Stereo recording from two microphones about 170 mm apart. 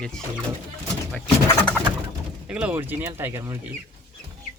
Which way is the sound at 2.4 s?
5° right (ahead or behind).